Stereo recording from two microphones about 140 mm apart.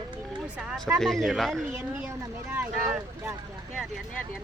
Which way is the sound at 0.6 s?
5° right (ahead or behind).